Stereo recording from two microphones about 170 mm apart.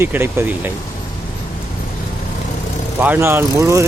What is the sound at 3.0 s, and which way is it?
Speech, 10° right (ahead or behind).